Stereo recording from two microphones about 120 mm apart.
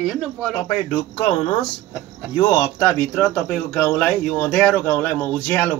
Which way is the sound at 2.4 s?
35° left (ahead or behind).